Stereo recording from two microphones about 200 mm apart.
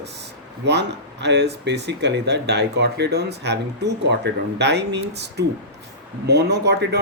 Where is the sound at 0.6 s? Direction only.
60° right (ahead or behind).